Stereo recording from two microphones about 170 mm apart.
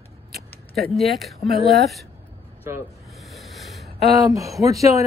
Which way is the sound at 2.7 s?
15° right (ahead or behind).